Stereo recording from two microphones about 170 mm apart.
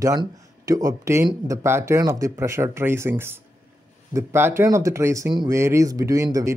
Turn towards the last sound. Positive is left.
turn(degrees=-20)  # may be behind; listen again after turning